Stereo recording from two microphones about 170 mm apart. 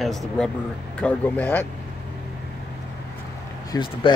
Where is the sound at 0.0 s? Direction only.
Centre (ahead or behind).